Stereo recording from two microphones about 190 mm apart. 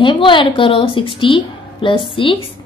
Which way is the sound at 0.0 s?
25° left (ahead or behind).